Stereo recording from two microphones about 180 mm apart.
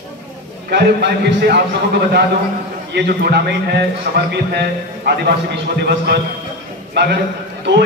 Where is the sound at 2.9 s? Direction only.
65° right (ahead or behind).